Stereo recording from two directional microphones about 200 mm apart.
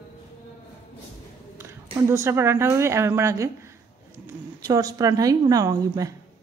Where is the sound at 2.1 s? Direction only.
15° right (ahead or behind).